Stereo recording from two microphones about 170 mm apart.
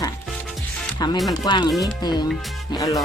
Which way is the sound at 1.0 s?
25° left (ahead or behind).